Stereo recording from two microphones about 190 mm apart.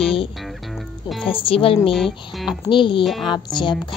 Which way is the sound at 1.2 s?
30° left (ahead or behind).